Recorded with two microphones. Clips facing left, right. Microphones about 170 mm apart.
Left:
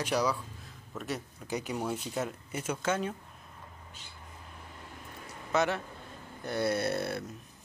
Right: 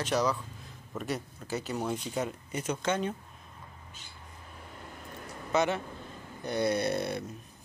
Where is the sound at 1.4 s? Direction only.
15° left (ahead or behind).